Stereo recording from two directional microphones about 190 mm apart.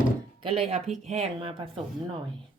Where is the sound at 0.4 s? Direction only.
30° right (ahead or behind).